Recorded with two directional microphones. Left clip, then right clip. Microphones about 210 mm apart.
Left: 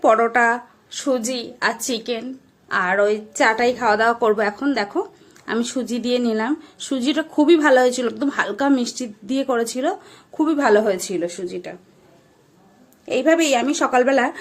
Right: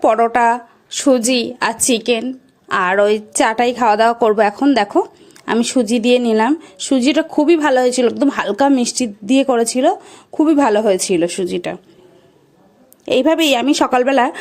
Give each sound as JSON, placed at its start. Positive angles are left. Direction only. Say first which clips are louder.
{"t": 0.0, "sound": "speech", "louder": "right 3 dB", "side_deg": -35}
{"t": 13.1, "sound": "speech", "louder": "right 4 dB", "side_deg": -40}